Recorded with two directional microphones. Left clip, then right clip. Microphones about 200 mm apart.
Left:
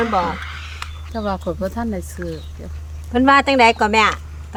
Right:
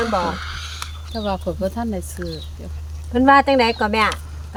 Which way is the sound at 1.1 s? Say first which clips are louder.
Left 1 dB; 10° left (ahead or behind).